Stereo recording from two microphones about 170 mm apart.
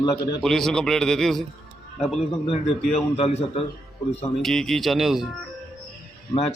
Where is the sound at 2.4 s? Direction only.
35° left (ahead or behind).